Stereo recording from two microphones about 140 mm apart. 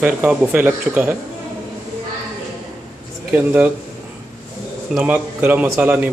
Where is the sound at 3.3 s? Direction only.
10° right (ahead or behind).